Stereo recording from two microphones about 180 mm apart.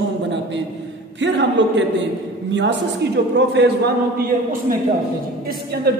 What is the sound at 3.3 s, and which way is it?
Speech, 70° right (ahead or behind).